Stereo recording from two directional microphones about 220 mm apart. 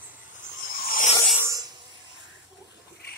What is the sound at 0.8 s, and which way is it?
Filing, 40° left (ahead or behind).